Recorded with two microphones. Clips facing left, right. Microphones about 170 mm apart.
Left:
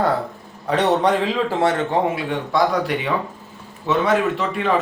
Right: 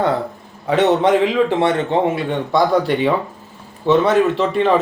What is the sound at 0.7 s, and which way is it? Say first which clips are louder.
Speech: right 4 dB; 20° right (ahead or behind).